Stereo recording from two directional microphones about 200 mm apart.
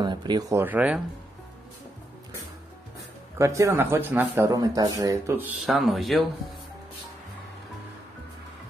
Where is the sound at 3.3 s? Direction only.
15° right (ahead or behind).